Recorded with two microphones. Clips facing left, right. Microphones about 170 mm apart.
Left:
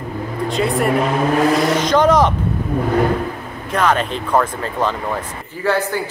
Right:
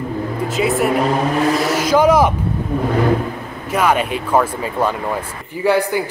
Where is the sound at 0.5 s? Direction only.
5° right (ahead or behind).